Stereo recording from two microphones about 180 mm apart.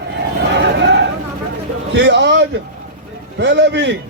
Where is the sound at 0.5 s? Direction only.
85° right.